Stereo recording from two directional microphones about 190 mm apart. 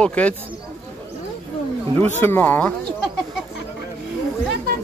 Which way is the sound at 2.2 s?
10° left (ahead or behind).